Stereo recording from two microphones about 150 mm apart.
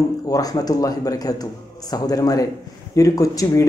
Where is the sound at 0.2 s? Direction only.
25° left (ahead or behind).